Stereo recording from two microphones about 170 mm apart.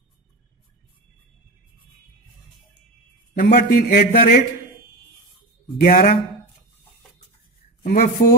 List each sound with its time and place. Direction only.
3.3 s a man's voice: 60° left (ahead or behind)
5.8 s a man's voice: 55° left (ahead or behind)
7.8 s a man's voice: 60° left (ahead or behind)